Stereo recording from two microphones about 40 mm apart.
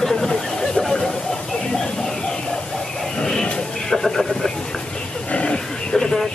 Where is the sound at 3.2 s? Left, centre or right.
Centre.